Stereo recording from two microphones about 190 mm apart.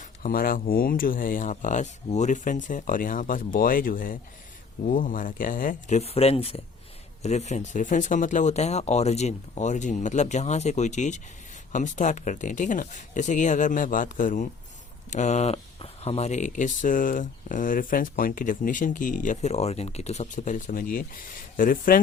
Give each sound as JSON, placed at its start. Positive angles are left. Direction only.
{"t": 0.0, "sound": "speech", "side_deg": 45}